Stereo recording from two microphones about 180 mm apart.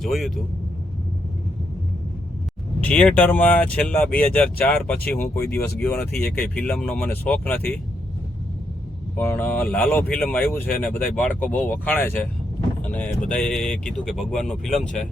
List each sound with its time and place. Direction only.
0.0 s speech: centre (ahead or behind)
2.8 s speech: 5° left (ahead or behind)
9.1 s speech: 15° left (ahead or behind)